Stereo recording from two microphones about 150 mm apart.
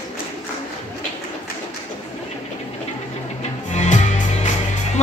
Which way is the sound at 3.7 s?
50° left (ahead or behind).